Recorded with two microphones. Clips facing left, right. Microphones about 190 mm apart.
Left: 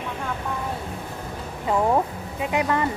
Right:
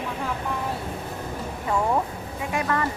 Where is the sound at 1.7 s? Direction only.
20° left (ahead or behind).